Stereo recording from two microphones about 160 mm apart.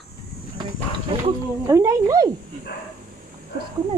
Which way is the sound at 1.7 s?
20° right (ahead or behind).